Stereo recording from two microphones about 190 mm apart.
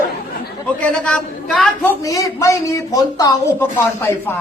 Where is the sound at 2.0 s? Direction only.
15° left (ahead or behind).